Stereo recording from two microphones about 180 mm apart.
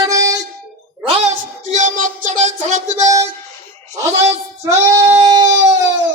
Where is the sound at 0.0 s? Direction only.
20° right (ahead or behind).